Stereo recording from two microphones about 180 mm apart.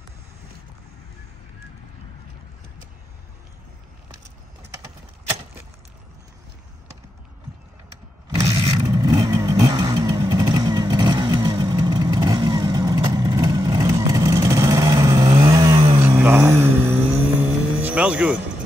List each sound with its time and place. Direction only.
8.6 s vehicle: 20° right (ahead or behind)